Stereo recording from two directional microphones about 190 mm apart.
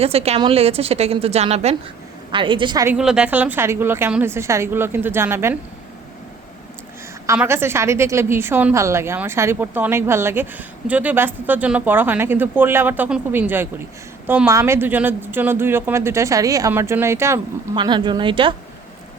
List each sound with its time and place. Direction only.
0.0 s a woman's voice: 30° right (ahead or behind)
2.8 s a woman's voice: 5° right (ahead or behind)
7.3 s a woman's voice: 15° right (ahead or behind)